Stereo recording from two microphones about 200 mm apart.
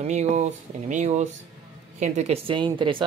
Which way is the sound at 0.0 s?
35° right (ahead or behind).